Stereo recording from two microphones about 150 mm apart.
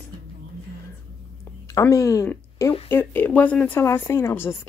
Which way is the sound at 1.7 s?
20° left (ahead or behind).